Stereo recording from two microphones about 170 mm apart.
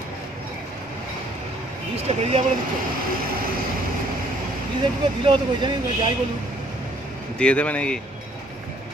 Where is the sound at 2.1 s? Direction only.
40° right (ahead or behind).